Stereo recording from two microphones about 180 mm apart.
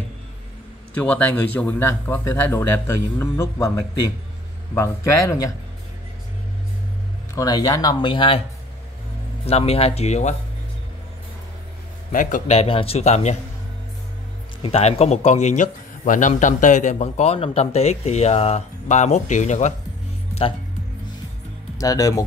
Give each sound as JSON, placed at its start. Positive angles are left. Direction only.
{"t": 0.9, "sound": "speech", "side_deg": 10}
{"t": 7.3, "sound": "speech", "side_deg": 20}
{"t": 9.5, "sound": "speech", "side_deg": 35}
{"t": 12.1, "sound": "speech", "side_deg": 50}
{"t": 14.6, "sound": "speech", "side_deg": 35}
{"t": 21.7, "sound": "speech", "side_deg": 20}